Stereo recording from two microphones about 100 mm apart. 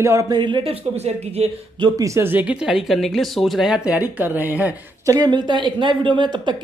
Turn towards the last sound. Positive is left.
turn(degrees=-50)  # may be behind; listen again after turning